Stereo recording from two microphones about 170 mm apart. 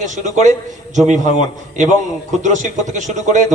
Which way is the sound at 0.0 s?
45° right (ahead or behind).